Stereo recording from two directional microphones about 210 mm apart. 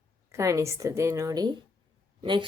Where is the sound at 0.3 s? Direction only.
15° right (ahead or behind).